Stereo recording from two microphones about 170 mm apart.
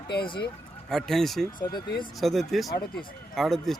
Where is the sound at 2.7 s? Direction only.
65° left (ahead or behind).